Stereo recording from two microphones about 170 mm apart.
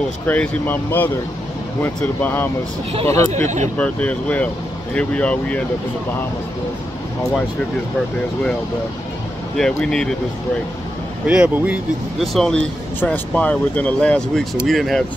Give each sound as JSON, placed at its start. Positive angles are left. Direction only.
{"t": 0.3, "sound": "speech", "side_deg": 10}
{"t": 3.3, "sound": "speech", "side_deg": -45}
{"t": 3.7, "sound": "speech", "side_deg": 5}
{"t": 9.6, "sound": "speech", "side_deg": 5}
{"t": 11.2, "sound": "speech", "side_deg": -10}